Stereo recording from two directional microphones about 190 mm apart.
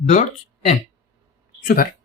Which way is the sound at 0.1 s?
40° left (ahead or behind).